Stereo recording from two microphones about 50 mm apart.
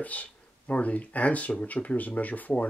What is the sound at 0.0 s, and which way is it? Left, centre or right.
Speech, left.